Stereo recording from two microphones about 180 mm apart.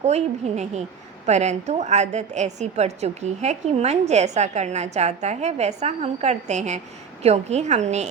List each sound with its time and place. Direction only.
0.0 s a woman's voice: 40° right (ahead or behind)